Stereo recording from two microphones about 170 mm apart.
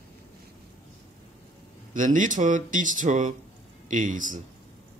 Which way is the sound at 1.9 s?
50° right (ahead or behind).